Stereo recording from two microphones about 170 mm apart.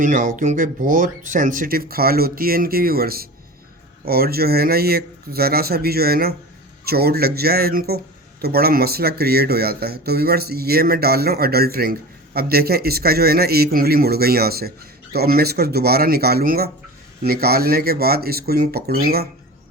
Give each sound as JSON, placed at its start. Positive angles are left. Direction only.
{"t": 0.0, "sound": "speech", "side_deg": -50}